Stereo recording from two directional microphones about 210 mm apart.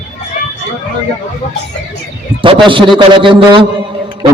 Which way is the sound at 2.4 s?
25° right (ahead or behind).